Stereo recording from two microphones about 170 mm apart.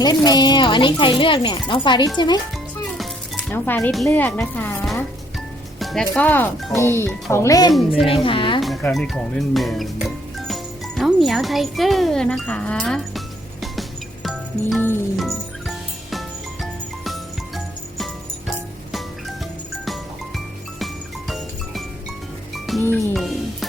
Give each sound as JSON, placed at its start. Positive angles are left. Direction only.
{"t": 0.0, "sound": "speech", "side_deg": 25}
{"t": 3.0, "sound": "music", "side_deg": 10}
{"t": 3.9, "sound": "speech", "side_deg": 5}
{"t": 7.7, "sound": "speech", "side_deg": 0}
{"t": 8.0, "sound": "a woman's voice", "side_deg": 30}
{"t": 8.6, "sound": "music", "side_deg": 0}
{"t": 15.1, "sound": "music", "side_deg": 0}
{"t": 20.7, "sound": "music", "side_deg": 0}
{"t": 22.8, "sound": "speech", "side_deg": 10}
{"t": 23.1, "sound": "music", "side_deg": 0}